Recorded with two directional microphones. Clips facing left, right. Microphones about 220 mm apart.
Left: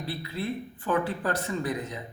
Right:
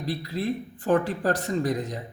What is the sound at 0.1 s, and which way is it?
A man's voice, 40° right (ahead or behind).